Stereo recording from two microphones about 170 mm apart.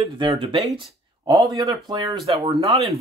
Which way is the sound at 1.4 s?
20° right (ahead or behind).